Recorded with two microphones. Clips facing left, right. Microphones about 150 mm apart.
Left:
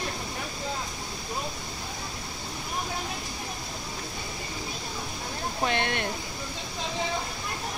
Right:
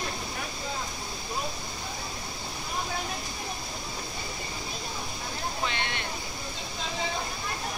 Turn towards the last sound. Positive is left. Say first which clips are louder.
# left 5 dB
turn(degrees=50)  # may be behind; listen again after turning